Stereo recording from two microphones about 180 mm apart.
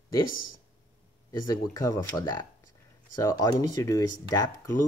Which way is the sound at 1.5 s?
20° left (ahead or behind).